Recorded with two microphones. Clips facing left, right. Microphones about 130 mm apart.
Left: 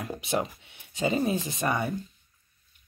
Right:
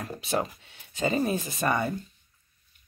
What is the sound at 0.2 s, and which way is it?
Speech, 20° left (ahead or behind).